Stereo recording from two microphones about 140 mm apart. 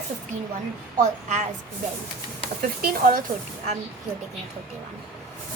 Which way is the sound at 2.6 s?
85° right.